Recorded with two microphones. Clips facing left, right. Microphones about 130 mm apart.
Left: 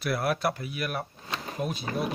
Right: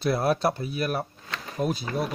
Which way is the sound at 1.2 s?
20° left (ahead or behind).